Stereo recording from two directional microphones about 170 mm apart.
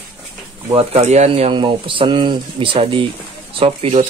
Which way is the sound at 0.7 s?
40° right (ahead or behind).